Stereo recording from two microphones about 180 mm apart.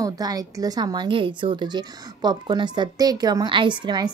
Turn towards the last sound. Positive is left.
turn(degrees=-25)  # may be behind; listen again after turning